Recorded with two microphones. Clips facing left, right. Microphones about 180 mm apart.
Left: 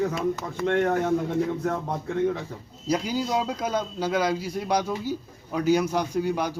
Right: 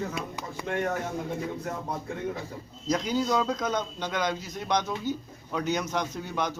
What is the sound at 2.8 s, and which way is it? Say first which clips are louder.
A man's voice: left 1 dB; 10° left (ahead or behind).